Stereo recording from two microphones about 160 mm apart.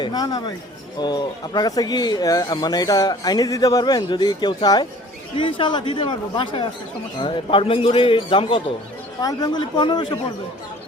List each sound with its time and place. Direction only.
0.0 s a man's voice: 25° left (ahead or behind)